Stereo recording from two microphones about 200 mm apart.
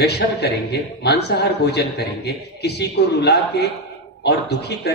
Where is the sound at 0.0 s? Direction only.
55° left (ahead or behind).